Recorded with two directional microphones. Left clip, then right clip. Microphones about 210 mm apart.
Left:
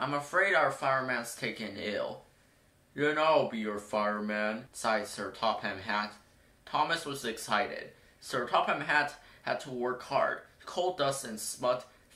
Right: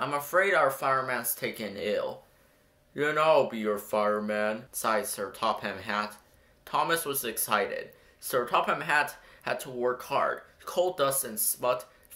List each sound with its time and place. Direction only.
0.0 s speech: 50° right (ahead or behind)